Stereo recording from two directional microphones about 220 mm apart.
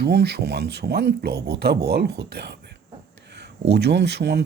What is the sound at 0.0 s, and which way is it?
Speech, 45° right (ahead or behind).